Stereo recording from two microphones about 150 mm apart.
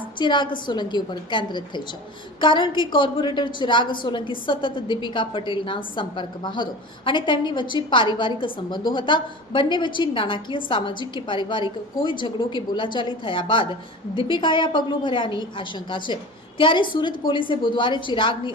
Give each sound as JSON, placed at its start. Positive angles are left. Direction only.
{"t": 0.2, "sound": "a woman's voice", "side_deg": 30}